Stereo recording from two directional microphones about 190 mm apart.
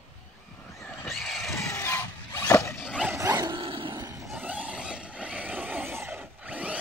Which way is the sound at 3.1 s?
15° right (ahead or behind).